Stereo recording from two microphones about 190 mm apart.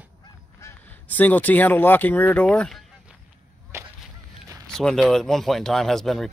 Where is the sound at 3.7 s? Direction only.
15° right (ahead or behind).